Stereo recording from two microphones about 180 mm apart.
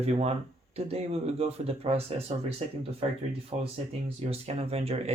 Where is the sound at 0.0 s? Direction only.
35° right (ahead or behind).